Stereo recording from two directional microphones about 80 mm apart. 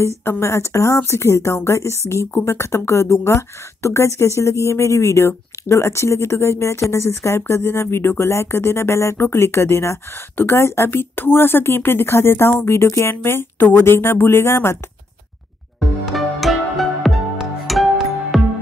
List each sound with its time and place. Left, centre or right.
0.0 s speech: left
16.1 s music: centre